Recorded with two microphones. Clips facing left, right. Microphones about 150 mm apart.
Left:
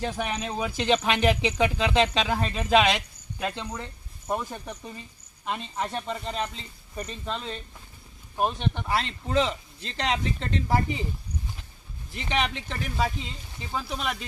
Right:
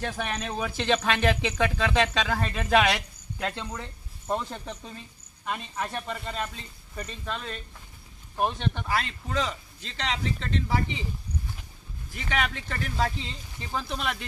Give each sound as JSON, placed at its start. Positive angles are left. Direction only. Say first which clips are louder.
{"t": 0.0, "sound": "speech", "louder": "left 2 dB", "side_deg": 15}
{"t": 8.4, "sound": "speech", "louder": "left 1 dB", "side_deg": 15}
{"t": 9.0, "sound": "speech", "louder": "left 4 dB", "side_deg": 30}
{"t": 12.2, "sound": "speech", "louder": "left 2 dB", "side_deg": 20}